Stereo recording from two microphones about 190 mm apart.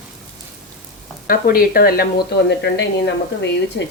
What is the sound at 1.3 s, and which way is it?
Speech, 50° left (ahead or behind).